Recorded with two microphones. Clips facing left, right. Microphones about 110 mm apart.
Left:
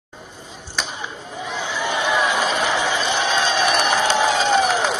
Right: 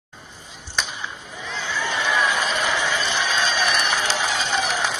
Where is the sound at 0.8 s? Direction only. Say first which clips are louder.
Left 1 dB; centre (ahead or behind).